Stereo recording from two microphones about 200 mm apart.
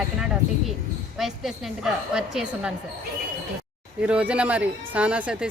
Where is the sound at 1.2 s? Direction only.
Centre (ahead or behind).